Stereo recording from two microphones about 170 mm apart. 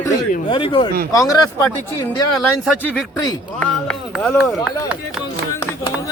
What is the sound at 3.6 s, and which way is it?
Speech, 5° left (ahead or behind).